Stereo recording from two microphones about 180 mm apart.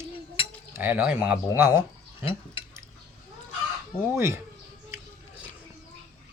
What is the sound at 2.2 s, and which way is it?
Speech, 30° left (ahead or behind).